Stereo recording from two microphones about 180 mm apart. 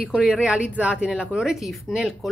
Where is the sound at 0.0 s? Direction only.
5° right (ahead or behind).